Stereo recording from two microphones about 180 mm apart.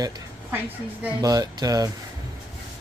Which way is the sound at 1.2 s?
20° right (ahead or behind).